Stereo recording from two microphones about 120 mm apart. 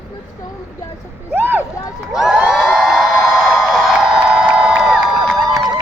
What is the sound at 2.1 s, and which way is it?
Crowd, centre (ahead or behind).